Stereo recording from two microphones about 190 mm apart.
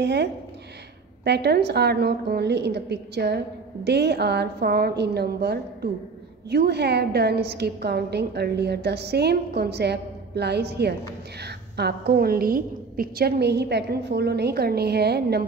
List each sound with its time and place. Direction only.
0.0 s a woman's voice: 65° right (ahead or behind)